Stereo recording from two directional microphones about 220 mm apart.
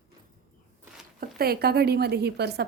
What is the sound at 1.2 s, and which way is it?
Speech, 45° right (ahead or behind).